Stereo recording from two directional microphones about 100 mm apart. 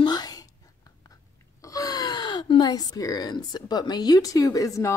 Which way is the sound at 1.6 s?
35° left (ahead or behind).